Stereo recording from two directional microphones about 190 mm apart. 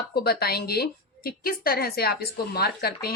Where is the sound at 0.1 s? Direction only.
55° left (ahead or behind).